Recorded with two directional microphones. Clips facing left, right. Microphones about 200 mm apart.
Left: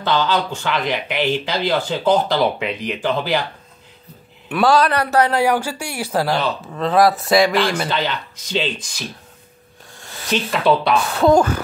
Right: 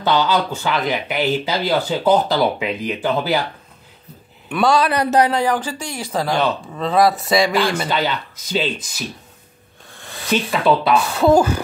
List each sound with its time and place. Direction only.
0.0 s speech: 10° right (ahead or behind)
4.5 s a man's voice: centre (ahead or behind)
4.9 s speech: 15° right (ahead or behind)
5.3 s a man's voice: 10° left (ahead or behind); by 9.0 s 5° right (ahead or behind)
10.5 s a man's voice: centre (ahead or behind)